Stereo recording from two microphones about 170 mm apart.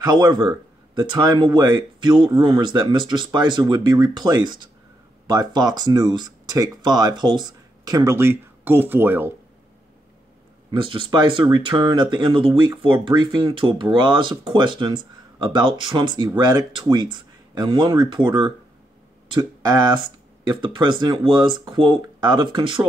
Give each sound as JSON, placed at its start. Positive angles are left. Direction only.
{"t": 0.0, "sound": "speech", "side_deg": -25}
{"t": 10.7, "sound": "speech", "side_deg": -30}